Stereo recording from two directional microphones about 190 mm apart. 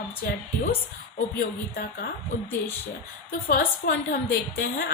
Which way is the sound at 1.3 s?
55° left (ahead or behind).